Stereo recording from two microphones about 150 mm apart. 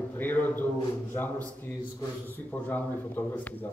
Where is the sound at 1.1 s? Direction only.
10° left (ahead or behind).